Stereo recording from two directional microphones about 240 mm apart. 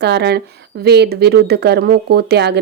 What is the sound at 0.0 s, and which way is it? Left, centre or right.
Speech, right.